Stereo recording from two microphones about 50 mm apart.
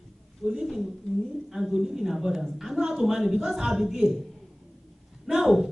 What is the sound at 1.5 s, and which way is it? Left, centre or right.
A woman's voice, centre.